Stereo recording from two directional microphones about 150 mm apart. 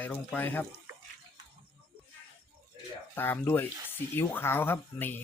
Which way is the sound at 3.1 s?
15° left (ahead or behind).